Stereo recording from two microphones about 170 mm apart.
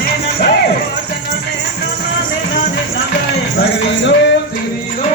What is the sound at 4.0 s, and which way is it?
Music, 90° left.